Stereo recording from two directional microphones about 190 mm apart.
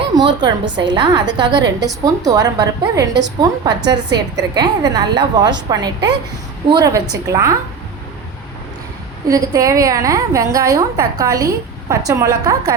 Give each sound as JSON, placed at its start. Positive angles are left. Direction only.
{"t": 0.1, "sound": "a woman's voice", "side_deg": -20}
{"t": 9.3, "sound": "a woman's voice", "side_deg": -15}